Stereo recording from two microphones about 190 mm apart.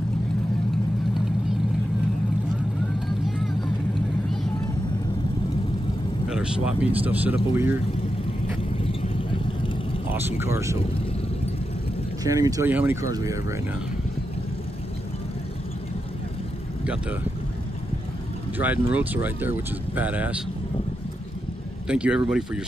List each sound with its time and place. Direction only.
6.2 s speech: 5° right (ahead or behind)
8.8 s vehicle: 25° left (ahead or behind)
10.1 s speech: 10° right (ahead or behind)
12.2 s speech: 20° right (ahead or behind)
18.6 s speech: 10° right (ahead or behind)
21.8 s speech: 5° right (ahead or behind)